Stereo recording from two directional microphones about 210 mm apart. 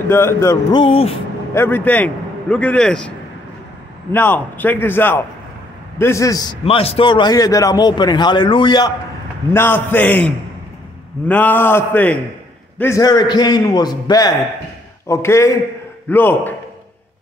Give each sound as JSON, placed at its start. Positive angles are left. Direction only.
{"t": 0.1, "sound": "a man's voice", "side_deg": 10}
{"t": 1.5, "sound": "a man's voice", "side_deg": 10}
{"t": 4.1, "sound": "a man's voice", "side_deg": 10}
{"t": 6.6, "sound": "a man's voice", "side_deg": 30}
{"t": 9.5, "sound": "a man's voice", "side_deg": 10}